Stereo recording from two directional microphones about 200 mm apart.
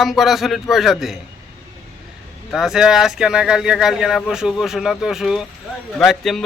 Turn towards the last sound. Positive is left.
turn(degrees=0)  # may be behind; listen again after turning